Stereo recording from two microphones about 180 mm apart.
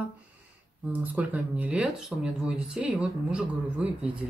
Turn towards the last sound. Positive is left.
turn(degrees=-5)  # may be behind; listen again after turning